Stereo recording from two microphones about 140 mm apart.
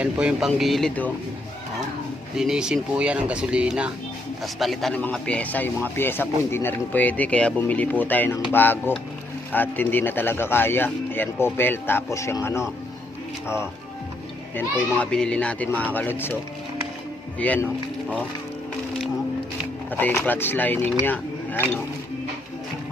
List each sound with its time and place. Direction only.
0.0 s speech: 10° right (ahead or behind); by 1.1 s 10° left (ahead or behind)
2.3 s speech: 5° right (ahead or behind); by 12.6 s 20° left (ahead or behind)
14.5 s speech: 10° left (ahead or behind)
17.4 s speech: 10° left (ahead or behind)
19.9 s speech: 15° left (ahead or behind)